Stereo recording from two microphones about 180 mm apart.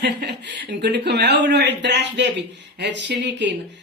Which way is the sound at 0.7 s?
70° right (ahead or behind).